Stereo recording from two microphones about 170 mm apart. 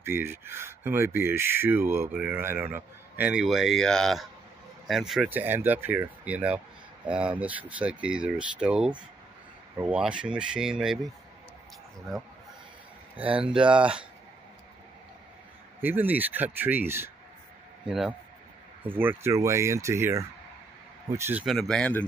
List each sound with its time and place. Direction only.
0.0 s speech: 15° right (ahead or behind)
13.1 s speech: 10° right (ahead or behind)
15.8 s speech: 10° right (ahead or behind)
17.8 s speech: centre (ahead or behind)
21.5 s speech: centre (ahead or behind)